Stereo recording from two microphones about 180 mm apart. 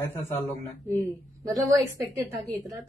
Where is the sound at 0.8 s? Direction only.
15° right (ahead or behind).